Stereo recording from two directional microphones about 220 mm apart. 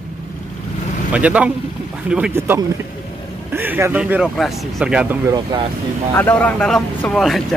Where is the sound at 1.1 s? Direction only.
5° right (ahead or behind).